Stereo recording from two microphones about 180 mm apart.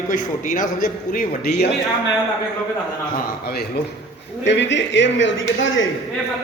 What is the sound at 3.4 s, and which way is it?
Speech, 60° left (ahead or behind).